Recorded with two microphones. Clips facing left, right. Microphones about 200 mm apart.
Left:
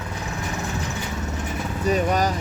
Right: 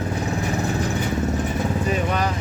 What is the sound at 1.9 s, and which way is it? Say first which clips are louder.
Speech: left 7 dB; 40° left (ahead or behind).